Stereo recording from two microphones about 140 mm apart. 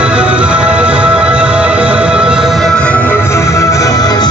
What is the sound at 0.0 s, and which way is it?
Music, 5° right (ahead or behind).